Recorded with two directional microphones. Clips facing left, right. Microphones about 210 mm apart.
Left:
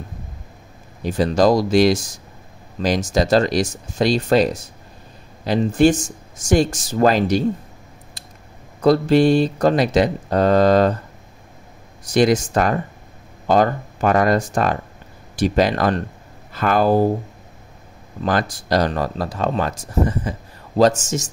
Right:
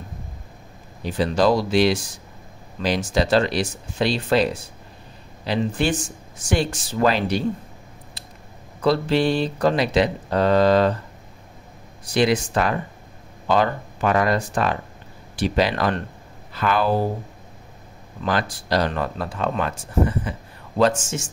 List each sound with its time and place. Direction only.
1.0 s speech: 45° left (ahead or behind)
8.8 s speech: 45° left (ahead or behind)
12.0 s speech: 45° left (ahead or behind)
18.2 s speech: 45° left (ahead or behind)